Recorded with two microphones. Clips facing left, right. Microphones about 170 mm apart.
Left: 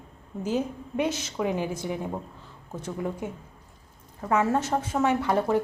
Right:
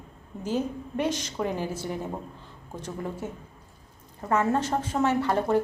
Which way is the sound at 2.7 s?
10° left (ahead or behind).